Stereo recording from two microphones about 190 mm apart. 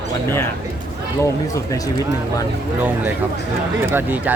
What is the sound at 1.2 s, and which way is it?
Speech, 15° left (ahead or behind).